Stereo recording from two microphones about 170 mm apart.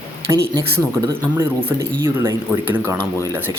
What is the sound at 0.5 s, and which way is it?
Speech, 20° right (ahead or behind).